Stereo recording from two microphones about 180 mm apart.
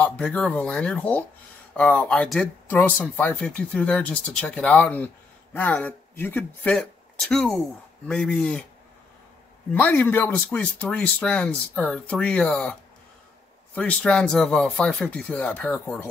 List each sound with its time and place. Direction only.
0.0 s speech: 5° left (ahead or behind)
9.8 s speech: 10° left (ahead or behind)
13.7 s speech: 5° left (ahead or behind)